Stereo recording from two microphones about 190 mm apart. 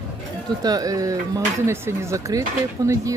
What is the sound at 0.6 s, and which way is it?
Speech, 20° right (ahead or behind).